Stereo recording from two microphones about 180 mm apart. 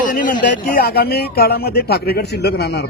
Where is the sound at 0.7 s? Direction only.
60° left (ahead or behind).